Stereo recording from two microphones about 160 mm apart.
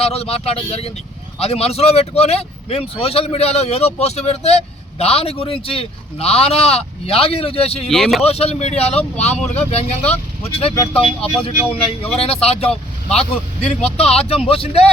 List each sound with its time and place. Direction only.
0.0 s speech: 40° left (ahead or behind)
7.9 s speech: centre (ahead or behind)
8.2 s speech: 40° left (ahead or behind)